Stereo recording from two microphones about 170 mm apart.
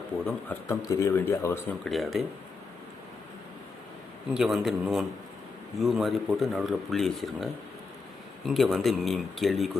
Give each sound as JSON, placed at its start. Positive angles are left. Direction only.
{"t": 0.7, "sound": "a man's voice", "side_deg": 20}
{"t": 1.8, "sound": "speech", "side_deg": 0}
{"t": 4.4, "sound": "speech", "side_deg": 0}